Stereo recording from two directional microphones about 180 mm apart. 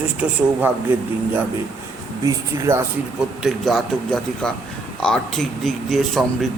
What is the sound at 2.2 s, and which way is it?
Speech, 15° right (ahead or behind).